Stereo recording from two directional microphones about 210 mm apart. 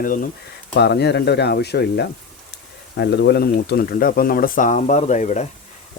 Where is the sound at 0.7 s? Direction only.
50° left (ahead or behind).